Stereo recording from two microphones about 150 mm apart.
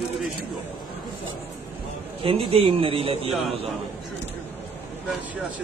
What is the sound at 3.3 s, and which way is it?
Speech, centre (ahead or behind).